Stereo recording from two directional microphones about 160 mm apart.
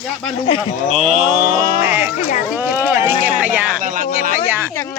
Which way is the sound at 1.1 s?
50° right (ahead or behind).